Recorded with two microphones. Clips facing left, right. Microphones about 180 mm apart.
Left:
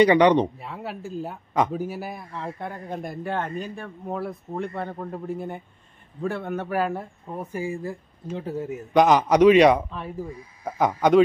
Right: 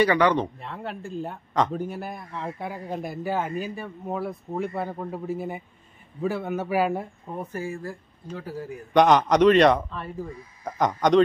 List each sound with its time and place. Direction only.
0.0 s speech: 20° left (ahead or behind)
0.6 s speech: 5° left (ahead or behind); by 7.1 s 10° right (ahead or behind)
7.5 s speech: 15° left (ahead or behind)
8.9 s speech: 5° left (ahead or behind)